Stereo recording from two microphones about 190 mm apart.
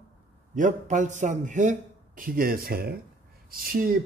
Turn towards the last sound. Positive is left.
turn(degrees=-50)  # may be behind; listen again after turning